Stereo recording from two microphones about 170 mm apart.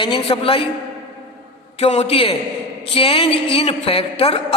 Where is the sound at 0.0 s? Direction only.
30° left (ahead or behind).